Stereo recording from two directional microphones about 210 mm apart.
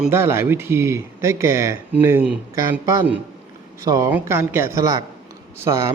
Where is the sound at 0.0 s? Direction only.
10° right (ahead or behind).